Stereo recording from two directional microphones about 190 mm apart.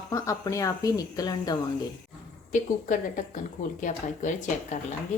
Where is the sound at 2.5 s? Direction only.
45° left (ahead or behind).